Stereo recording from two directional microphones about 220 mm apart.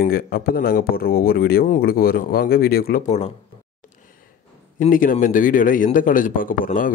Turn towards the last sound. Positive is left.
turn(degrees=40)  # may be behind; listen again after turning